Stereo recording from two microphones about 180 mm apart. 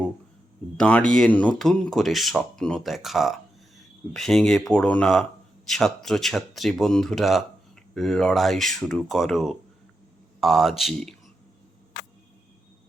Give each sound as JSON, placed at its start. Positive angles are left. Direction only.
{"t": 0.8, "sound": "speech", "side_deg": 5}